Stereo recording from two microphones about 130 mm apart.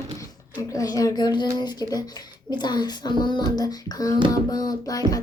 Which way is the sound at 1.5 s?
30° left (ahead or behind).